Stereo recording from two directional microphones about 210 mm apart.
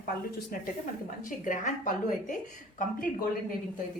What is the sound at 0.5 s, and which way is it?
A woman's voice, 45° left (ahead or behind).